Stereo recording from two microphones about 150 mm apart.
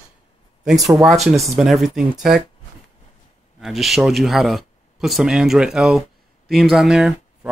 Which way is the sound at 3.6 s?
Centre (ahead or behind).